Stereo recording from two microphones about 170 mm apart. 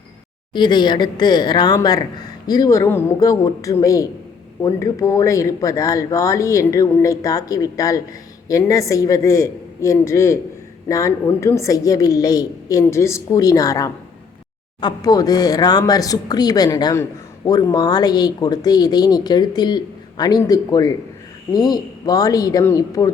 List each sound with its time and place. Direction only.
0.5 s a man's voice: 25° left (ahead or behind)